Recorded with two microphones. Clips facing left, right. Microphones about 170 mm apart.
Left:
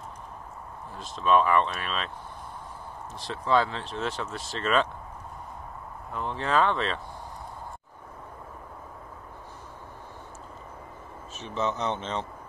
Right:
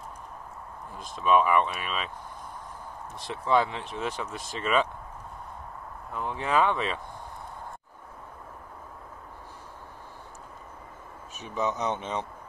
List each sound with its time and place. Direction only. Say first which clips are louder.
1.2 s speech: even; 10° right (ahead or behind)
3.3 s speech: even; 20° right (ahead or behind)
6.1 s speech: even; 10° right (ahead or behind)
11.3 s speech: even; 15° right (ahead or behind)